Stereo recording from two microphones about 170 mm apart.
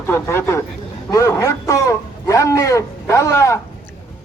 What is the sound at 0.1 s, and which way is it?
A man's voice, 15° left (ahead or behind).